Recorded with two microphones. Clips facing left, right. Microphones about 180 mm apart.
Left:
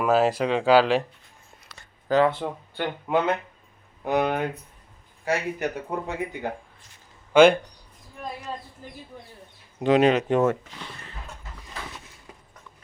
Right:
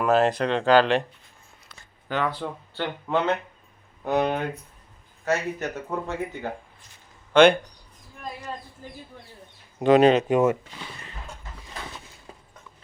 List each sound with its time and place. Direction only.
0.0 s speech: 5° left (ahead or behind)
2.0 s speech: 35° left (ahead or behind)
2.3 s speech: 15° left (ahead or behind)
9.8 s speech: 45° right (ahead or behind)
10.2 s speech: 10° right (ahead or behind)